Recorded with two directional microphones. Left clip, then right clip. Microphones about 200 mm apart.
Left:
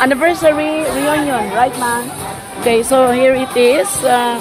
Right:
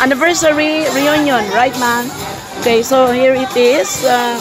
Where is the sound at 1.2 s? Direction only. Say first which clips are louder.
Right 2 dB; 30° right (ahead or behind).